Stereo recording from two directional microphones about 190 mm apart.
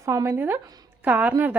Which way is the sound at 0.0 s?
15° right (ahead or behind).